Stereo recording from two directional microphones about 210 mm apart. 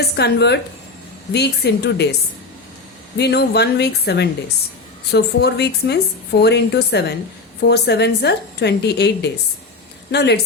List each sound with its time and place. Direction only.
0.0 s a woman's voice: 50° left (ahead or behind)
3.2 s a woman's voice: 50° left (ahead or behind)